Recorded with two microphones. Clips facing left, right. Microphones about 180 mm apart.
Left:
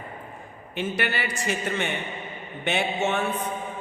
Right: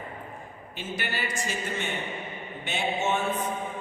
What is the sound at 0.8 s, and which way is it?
A man's voice, 65° left (ahead or behind).